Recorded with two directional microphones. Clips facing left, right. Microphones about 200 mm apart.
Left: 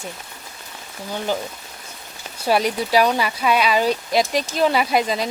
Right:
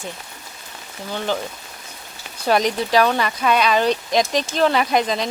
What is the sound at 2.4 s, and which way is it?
Speech, 5° left (ahead or behind).